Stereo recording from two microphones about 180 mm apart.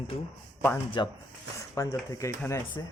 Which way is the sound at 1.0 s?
25° left (ahead or behind).